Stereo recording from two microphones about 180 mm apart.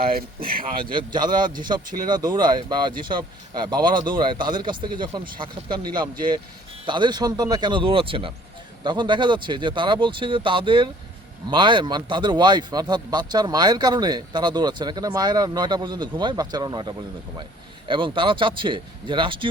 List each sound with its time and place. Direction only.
0.0 s speech: 55° right (ahead or behind)
0.9 s speech: 25° right (ahead or behind)